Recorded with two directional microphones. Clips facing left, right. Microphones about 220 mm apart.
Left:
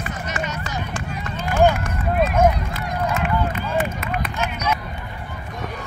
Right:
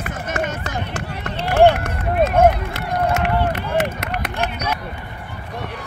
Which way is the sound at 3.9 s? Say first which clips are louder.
Right 1 dB; 75° right (ahead or behind).